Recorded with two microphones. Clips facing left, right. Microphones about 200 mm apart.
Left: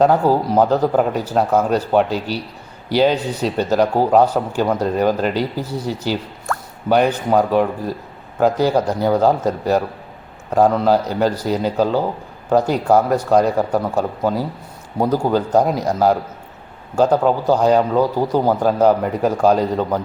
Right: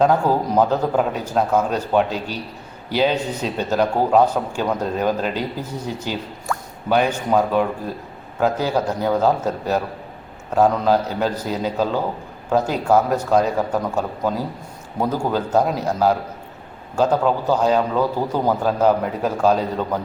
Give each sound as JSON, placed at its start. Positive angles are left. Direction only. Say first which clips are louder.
{"t": 0.0, "sound": "speech", "louder": "left 3 dB", "side_deg": 10}
{"t": 7.3, "sound": "speech", "louder": "left 3 dB", "side_deg": 10}